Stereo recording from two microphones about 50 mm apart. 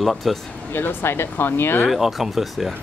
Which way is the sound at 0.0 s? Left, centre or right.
Centre.